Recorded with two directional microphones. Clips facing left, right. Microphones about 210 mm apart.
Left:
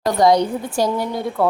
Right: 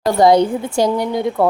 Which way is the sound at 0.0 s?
30° right (ahead or behind).